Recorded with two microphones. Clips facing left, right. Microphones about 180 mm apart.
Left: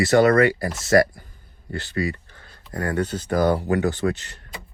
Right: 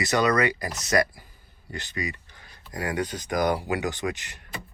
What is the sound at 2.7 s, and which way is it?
Speech, 15° right (ahead or behind).